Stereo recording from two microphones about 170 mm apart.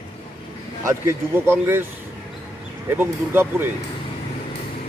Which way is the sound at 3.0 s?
10° right (ahead or behind).